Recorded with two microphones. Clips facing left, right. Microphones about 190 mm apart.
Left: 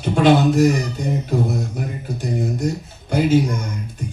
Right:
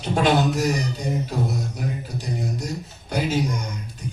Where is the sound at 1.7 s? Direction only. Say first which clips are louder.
Left 2 dB; 50° left (ahead or behind).